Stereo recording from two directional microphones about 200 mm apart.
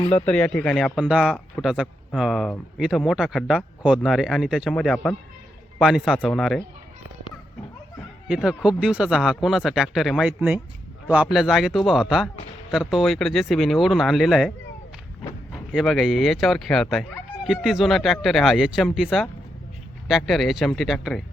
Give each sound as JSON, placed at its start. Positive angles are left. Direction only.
{"t": 0.0, "sound": "speech", "side_deg": 30}
{"t": 0.3, "sound": "speech", "side_deg": 5}
{"t": 0.9, "sound": "speech", "side_deg": -5}
{"t": 8.3, "sound": "speech", "side_deg": -5}
{"t": 15.5, "sound": "speech", "side_deg": 0}